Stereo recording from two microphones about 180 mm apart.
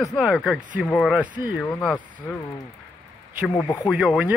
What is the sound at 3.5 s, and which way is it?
Speech, 20° left (ahead or behind).